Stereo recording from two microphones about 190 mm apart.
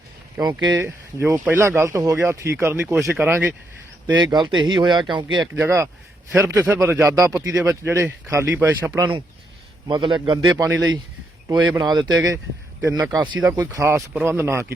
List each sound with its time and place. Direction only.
0.3 s speech: 20° right (ahead or behind)
4.2 s speech: 25° right (ahead or behind)
5.5 s speech: 15° right (ahead or behind)
9.8 s speech: 25° right (ahead or behind)